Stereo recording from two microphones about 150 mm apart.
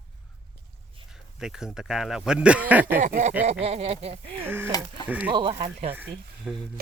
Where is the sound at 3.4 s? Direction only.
45° right (ahead or behind).